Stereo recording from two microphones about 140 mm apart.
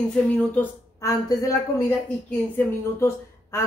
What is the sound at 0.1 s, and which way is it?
Speech, 5° left (ahead or behind).